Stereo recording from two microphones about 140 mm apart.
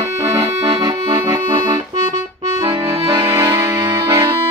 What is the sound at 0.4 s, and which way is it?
Accordion, 35° right (ahead or behind).